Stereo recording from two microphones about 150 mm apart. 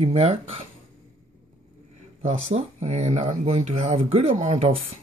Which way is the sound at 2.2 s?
45° right (ahead or behind).